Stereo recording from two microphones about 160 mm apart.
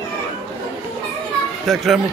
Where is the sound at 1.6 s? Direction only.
Centre (ahead or behind).